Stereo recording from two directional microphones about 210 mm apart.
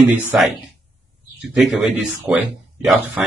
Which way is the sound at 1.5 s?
Centre (ahead or behind).